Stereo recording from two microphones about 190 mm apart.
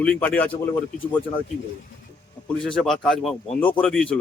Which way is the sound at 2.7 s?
Centre (ahead or behind).